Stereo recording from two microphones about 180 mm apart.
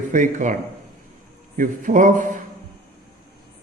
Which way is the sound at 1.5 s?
50° right (ahead or behind).